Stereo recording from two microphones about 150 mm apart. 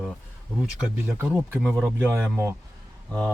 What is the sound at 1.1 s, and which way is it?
Speech, 15° right (ahead or behind).